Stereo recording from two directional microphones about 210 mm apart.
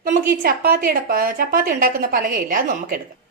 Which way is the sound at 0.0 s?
45° right (ahead or behind).